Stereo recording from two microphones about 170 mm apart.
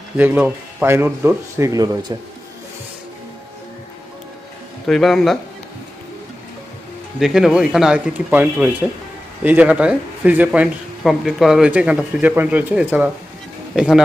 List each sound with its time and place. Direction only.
0.2 s speech: 10° right (ahead or behind)
4.8 s speech: centre (ahead or behind)
7.2 s speech: centre (ahead or behind)